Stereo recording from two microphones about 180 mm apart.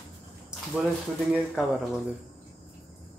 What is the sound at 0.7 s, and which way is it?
Speech, 5° right (ahead or behind).